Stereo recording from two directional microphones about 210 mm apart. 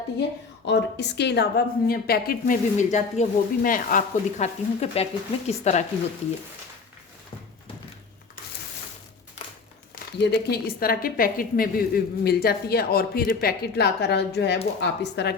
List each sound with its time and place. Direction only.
0.2 s a woman's voice: 55° left (ahead or behind); by 5.8 s 30° left (ahead or behind)
10.2 s a woman's voice: 50° left (ahead or behind)